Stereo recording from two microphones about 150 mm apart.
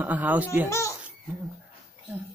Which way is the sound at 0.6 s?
20° left (ahead or behind).